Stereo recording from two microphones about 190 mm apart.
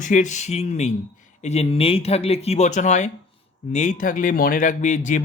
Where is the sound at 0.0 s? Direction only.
40° left (ahead or behind).